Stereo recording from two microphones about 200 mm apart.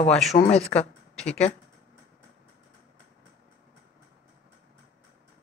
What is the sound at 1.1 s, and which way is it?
Speech, 5° left (ahead or behind).